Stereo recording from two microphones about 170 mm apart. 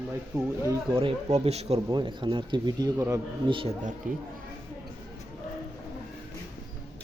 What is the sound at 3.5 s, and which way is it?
Speech, 30° right (ahead or behind).